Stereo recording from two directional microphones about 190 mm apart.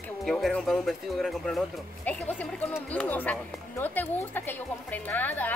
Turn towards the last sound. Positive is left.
turn(degrees=10)  # may be behind; listen again after turning